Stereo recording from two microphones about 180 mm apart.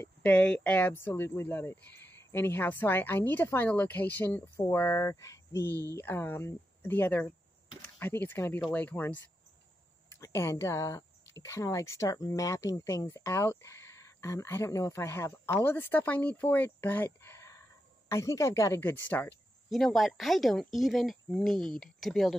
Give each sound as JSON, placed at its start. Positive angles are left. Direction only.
{"t": 0.0, "sound": "speech", "side_deg": 5}